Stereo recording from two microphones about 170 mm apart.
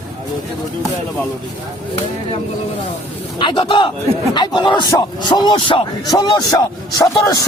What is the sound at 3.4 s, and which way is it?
Speech, 25° left (ahead or behind).